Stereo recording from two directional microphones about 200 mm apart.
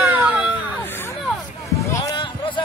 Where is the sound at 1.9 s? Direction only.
20° left (ahead or behind).